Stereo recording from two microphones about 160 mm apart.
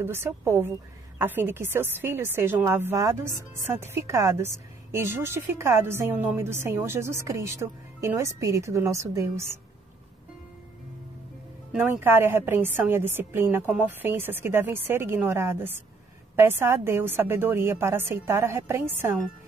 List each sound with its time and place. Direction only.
0.0 s a woman's voice: 15° right (ahead or behind)
11.7 s a woman's voice: 15° right (ahead or behind)